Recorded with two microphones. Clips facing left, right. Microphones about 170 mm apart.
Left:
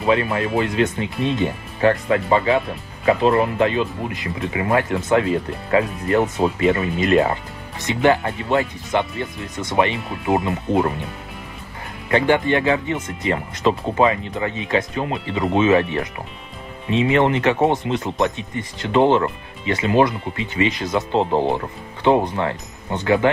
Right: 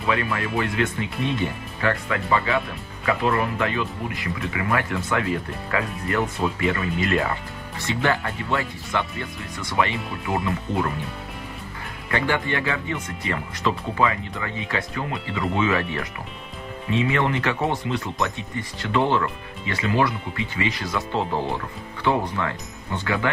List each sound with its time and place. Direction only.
0.0 s speech: 25° left (ahead or behind)
12.1 s speech: 20° left (ahead or behind)
21.2 s speech: 60° left (ahead or behind)
22.0 s speech: 20° left (ahead or behind)